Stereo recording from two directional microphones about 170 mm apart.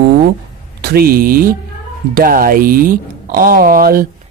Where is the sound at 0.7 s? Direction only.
70° right (ahead or behind).